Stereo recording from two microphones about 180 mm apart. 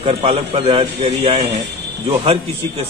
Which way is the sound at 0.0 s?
35° right (ahead or behind).